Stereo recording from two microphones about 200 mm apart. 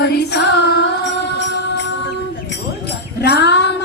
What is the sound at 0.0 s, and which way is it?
Carnatic music, 55° left (ahead or behind).